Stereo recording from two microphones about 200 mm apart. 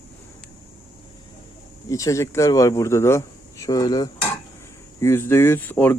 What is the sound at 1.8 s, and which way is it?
Speech, 15° left (ahead or behind).